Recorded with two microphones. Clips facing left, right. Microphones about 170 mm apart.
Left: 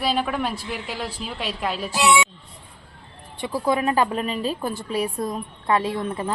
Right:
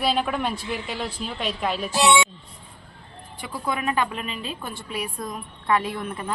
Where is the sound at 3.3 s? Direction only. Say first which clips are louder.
Left 6 dB; 25° left (ahead or behind).